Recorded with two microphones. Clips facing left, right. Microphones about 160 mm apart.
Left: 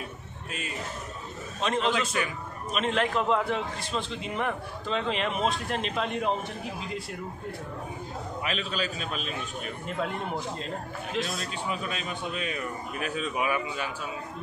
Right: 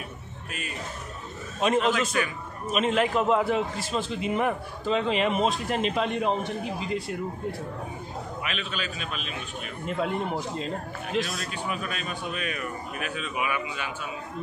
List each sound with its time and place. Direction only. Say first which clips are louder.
1.6 s a man's voice: right 4 dB; 5° right (ahead or behind)
8.5 s a man's voice: left 5 dB; 35° left (ahead or behind)
9.8 s a man's voice: right 5 dB; centre (ahead or behind)
11.3 s a man's voice: right 1 dB; 25° left (ahead or behind)